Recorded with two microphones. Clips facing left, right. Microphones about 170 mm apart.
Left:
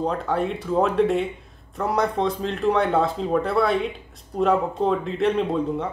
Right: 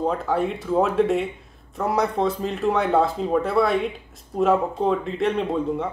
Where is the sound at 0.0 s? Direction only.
Centre (ahead or behind).